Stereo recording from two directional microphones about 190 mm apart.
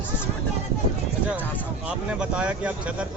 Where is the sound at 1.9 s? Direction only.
5° right (ahead or behind).